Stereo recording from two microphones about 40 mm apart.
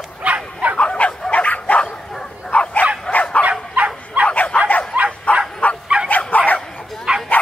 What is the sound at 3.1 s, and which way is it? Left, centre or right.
Bow-wow, left.